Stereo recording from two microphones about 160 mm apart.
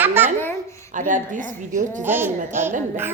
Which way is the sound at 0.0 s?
10° right (ahead or behind).